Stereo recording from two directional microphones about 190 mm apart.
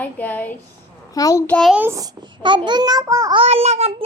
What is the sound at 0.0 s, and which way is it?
A child's voice, 10° left (ahead or behind).